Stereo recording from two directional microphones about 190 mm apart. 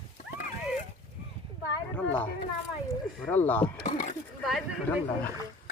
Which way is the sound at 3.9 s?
45° left (ahead or behind).